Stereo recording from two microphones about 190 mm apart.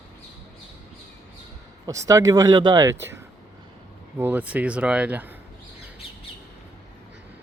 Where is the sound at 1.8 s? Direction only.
15° right (ahead or behind).